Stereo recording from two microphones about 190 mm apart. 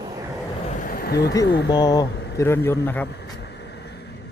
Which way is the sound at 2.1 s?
60° left (ahead or behind).